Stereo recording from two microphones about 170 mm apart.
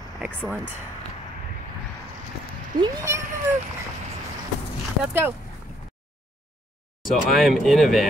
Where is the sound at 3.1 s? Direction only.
15° right (ahead or behind).